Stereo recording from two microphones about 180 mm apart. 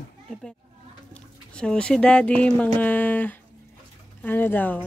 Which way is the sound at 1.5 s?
5° left (ahead or behind).